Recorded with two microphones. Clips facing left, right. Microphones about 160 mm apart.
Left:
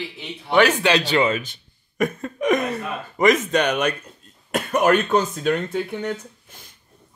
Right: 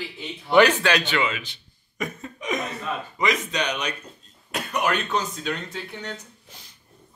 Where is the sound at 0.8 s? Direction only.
30° left (ahead or behind).